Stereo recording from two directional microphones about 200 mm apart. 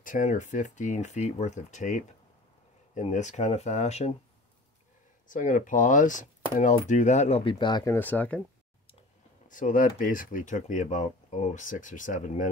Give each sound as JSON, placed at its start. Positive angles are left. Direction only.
{"t": 0.0, "sound": "speech", "side_deg": 40}
{"t": 5.3, "sound": "speech", "side_deg": 40}
{"t": 9.5, "sound": "speech", "side_deg": 40}